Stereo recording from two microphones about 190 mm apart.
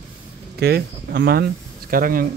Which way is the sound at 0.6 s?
55° right (ahead or behind).